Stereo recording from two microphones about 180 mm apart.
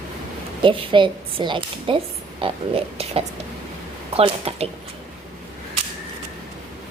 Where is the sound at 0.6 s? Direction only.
30° right (ahead or behind).